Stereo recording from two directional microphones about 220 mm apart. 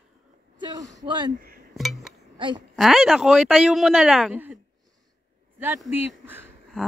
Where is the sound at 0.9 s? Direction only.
20° right (ahead or behind).